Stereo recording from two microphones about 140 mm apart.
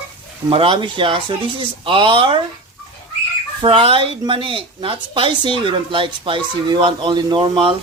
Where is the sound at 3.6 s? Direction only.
40° right (ahead or behind).